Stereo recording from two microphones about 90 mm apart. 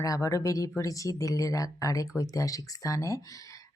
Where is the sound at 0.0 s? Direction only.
40° left (ahead or behind).